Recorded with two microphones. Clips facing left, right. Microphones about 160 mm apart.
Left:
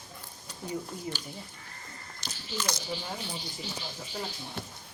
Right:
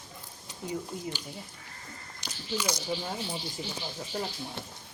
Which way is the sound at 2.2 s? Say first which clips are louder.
Right 3 dB; 10° right (ahead or behind).